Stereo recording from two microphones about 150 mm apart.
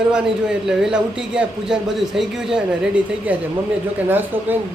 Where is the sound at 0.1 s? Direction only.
5° right (ahead or behind).